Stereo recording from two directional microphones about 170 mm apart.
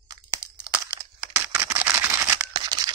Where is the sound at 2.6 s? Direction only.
25° right (ahead or behind).